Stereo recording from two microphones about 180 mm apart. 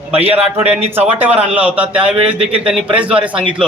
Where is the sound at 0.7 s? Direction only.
10° right (ahead or behind).